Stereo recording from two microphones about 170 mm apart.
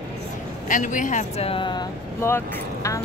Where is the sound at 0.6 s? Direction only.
50° left (ahead or behind); by 1.8 s 30° left (ahead or behind).